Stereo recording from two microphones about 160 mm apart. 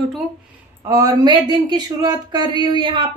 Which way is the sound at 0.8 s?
20° right (ahead or behind).